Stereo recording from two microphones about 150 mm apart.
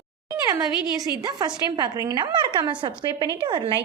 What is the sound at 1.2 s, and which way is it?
Speech, 30° right (ahead or behind).